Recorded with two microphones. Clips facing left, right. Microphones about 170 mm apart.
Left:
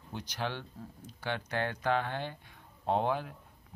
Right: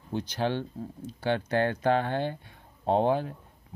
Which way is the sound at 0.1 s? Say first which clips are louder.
Right 8 dB; 30° right (ahead or behind).